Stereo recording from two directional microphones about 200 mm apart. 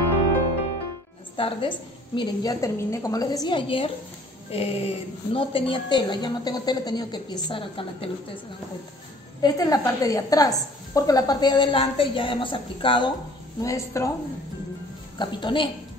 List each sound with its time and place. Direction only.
1.3 s a woman's voice: 25° left (ahead or behind)
9.4 s a woman's voice: 20° left (ahead or behind)
15.1 s a woman's voice: 25° left (ahead or behind)